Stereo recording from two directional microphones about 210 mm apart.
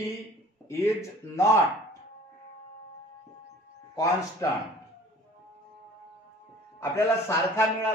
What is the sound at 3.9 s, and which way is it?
Speech, 15° left (ahead or behind).